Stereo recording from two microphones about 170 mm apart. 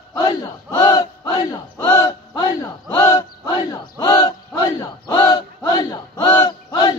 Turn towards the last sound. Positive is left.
turn(degrees=25)  # may be behind; listen again after turning